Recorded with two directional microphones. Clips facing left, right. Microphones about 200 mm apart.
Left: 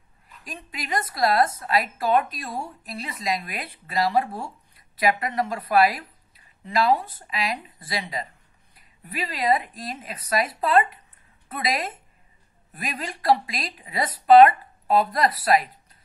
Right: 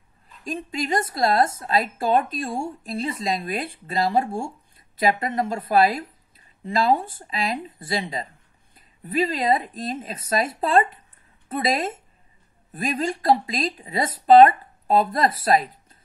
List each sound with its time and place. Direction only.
0.5 s speech: 25° right (ahead or behind)